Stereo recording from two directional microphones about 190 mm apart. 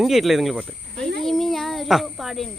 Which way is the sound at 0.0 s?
Centre (ahead or behind).